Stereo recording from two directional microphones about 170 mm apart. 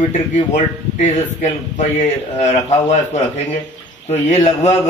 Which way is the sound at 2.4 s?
40° left (ahead or behind).